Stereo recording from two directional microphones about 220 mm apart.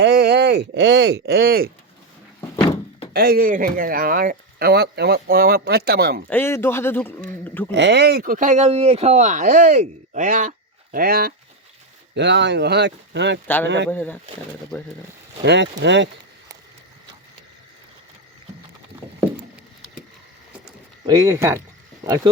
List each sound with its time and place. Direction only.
0.0 s speech: 50° right (ahead or behind)
3.1 s speech: 45° right (ahead or behind)
6.3 s speech: 10° left (ahead or behind)
7.7 s speech: 50° right (ahead or behind)
13.9 s speech: 10° left (ahead or behind)
15.4 s speech: 50° right (ahead or behind)
21.1 s speech: 15° right (ahead or behind)